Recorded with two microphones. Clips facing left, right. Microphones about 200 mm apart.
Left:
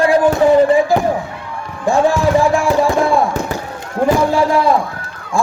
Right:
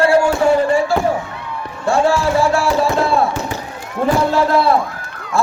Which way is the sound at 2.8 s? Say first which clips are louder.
Left 2 dB; 15° left (ahead or behind).